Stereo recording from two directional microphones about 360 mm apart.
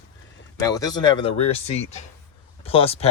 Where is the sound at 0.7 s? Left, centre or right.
Centre.